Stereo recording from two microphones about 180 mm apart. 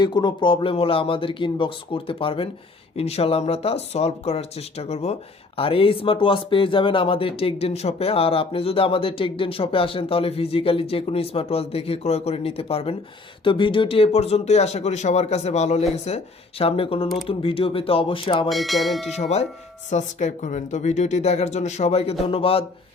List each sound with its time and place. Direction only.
0.0 s speech: 25° left (ahead or behind)
18.4 s speech: centre (ahead or behind)
19.1 s speech: 40° left (ahead or behind)